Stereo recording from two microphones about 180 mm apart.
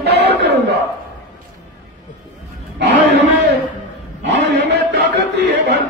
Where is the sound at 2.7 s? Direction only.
75° right (ahead or behind).